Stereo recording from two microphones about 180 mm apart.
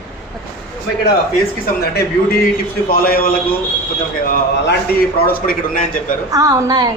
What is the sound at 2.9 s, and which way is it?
A man's voice, 55° left (ahead or behind).